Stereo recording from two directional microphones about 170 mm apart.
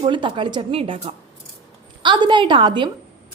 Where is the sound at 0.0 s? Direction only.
30° right (ahead or behind).